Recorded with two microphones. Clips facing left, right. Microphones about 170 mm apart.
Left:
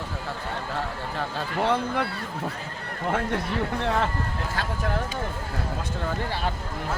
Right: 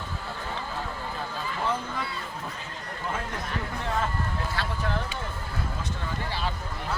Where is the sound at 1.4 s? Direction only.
70° left (ahead or behind).